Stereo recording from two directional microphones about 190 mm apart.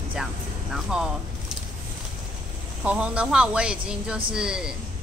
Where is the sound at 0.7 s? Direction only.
5° right (ahead or behind).